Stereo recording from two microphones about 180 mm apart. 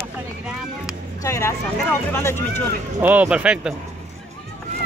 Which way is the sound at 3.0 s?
10° right (ahead or behind).